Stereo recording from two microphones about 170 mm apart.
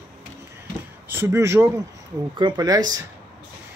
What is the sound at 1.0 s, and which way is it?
Speech, 15° right (ahead or behind).